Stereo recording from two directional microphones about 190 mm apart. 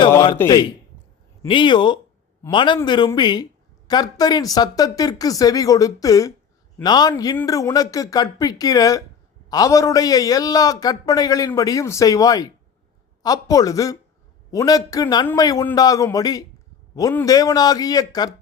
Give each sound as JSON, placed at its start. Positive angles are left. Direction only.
{"t": 0.3, "sound": "a man's voice", "side_deg": 15}